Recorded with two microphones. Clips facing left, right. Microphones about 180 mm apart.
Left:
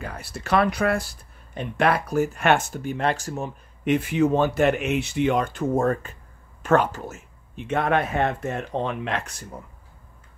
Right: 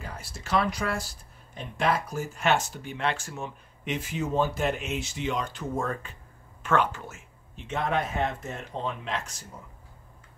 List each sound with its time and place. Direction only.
0.0 s speech: 60° left (ahead or behind); by 7.2 s 40° left (ahead or behind)
7.5 s speech: 60° left (ahead or behind)